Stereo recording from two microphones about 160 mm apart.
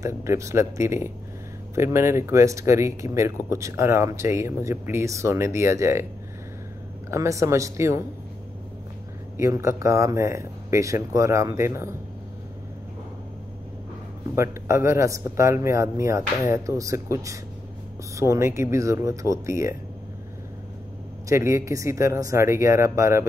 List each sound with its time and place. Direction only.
0.0 s speech: 20° right (ahead or behind)
7.1 s speech: 20° right (ahead or behind)
9.4 s speech: 20° right (ahead or behind)
14.3 s speech: 15° right (ahead or behind)
21.3 s speech: 15° right (ahead or behind)